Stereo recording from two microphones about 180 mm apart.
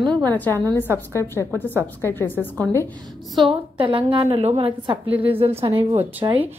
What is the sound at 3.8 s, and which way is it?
A woman's voice, 30° right (ahead or behind).